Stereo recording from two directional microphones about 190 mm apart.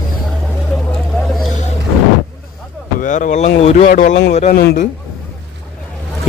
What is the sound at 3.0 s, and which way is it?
Speech, 40° left (ahead or behind).